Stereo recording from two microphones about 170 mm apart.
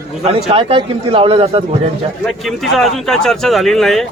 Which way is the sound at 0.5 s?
35° right (ahead or behind).